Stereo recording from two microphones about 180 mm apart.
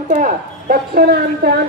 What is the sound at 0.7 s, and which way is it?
Speech, 60° right (ahead or behind).